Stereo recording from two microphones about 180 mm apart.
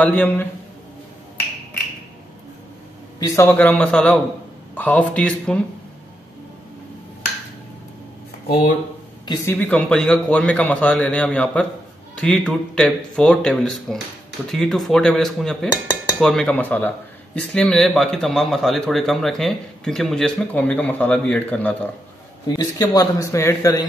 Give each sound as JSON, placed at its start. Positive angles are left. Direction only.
{"t": 0.0, "sound": "a man's voice", "side_deg": 10}
{"t": 3.2, "sound": "a man's voice", "side_deg": 15}
{"t": 9.5, "sound": "a man's voice", "side_deg": 10}
{"t": 22.5, "sound": "a man's voice", "side_deg": 20}